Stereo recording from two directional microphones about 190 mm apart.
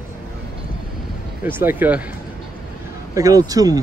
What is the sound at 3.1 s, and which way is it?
Speech, 20° right (ahead or behind).